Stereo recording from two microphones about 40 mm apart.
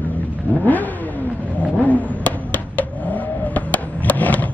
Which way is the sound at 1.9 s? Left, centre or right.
Left.